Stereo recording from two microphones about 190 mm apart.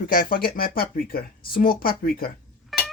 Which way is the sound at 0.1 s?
50° left (ahead or behind).